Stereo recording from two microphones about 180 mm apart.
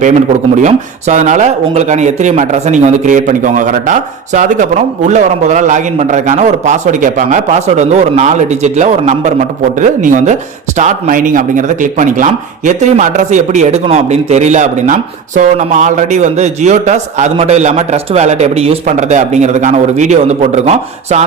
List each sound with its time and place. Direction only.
0.6 s speech: 40° right (ahead or behind)